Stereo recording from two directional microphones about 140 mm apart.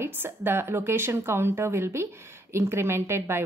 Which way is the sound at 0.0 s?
15° right (ahead or behind).